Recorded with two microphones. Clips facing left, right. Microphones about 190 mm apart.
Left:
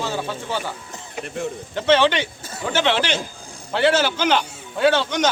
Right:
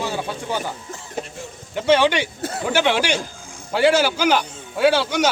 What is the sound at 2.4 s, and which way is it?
Speech, 65° right (ahead or behind).